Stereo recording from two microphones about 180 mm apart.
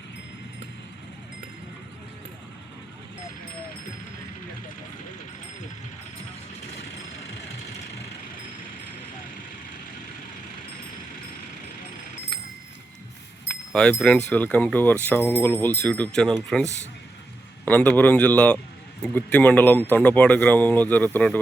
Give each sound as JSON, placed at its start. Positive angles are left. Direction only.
{"t": 13.7, "sound": "a sound", "side_deg": 5}
{"t": 14.3, "sound": "speech", "side_deg": 10}
{"t": 17.7, "sound": "speech", "side_deg": 10}